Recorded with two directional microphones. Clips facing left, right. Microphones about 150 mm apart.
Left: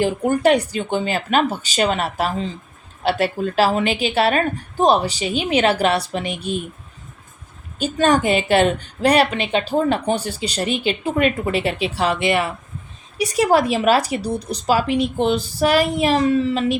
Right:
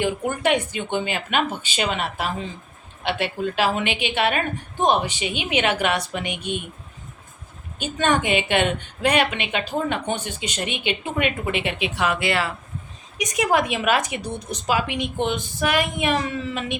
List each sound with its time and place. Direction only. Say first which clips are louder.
0.0 s a woman's voice: left 6 dB; 40° left (ahead or behind)
7.8 s a woman's voice: left 5 dB; 35° left (ahead or behind)